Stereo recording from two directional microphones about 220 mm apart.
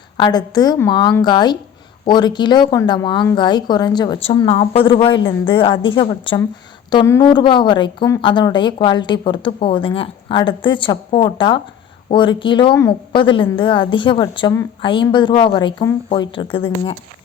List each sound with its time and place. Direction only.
0.2 s a woman's voice: 20° left (ahead or behind)